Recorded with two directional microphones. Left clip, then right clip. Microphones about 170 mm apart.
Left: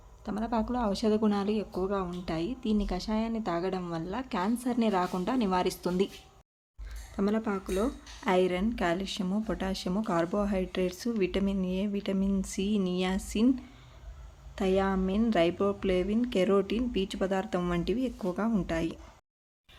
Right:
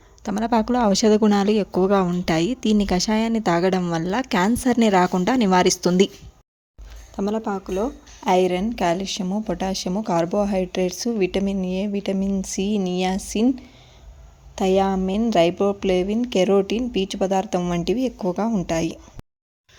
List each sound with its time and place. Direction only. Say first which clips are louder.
0.2 s speech: right 11 dB; 45° right (ahead or behind)
7.2 s speech: right 6 dB; 15° right (ahead or behind)
8.2 s speech: right 8 dB; 25° right (ahead or behind)